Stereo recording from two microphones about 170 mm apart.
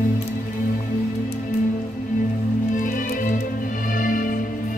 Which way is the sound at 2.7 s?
50° left (ahead or behind).